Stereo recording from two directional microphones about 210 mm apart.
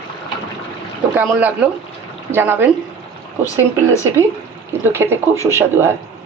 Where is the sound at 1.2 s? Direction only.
5° right (ahead or behind).